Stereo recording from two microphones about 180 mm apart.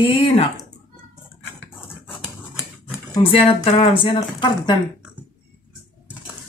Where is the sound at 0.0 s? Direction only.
30° left (ahead or behind).